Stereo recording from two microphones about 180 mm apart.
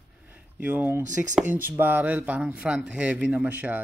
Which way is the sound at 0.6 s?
10° right (ahead or behind).